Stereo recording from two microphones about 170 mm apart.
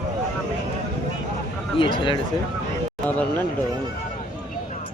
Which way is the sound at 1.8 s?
30° left (ahead or behind).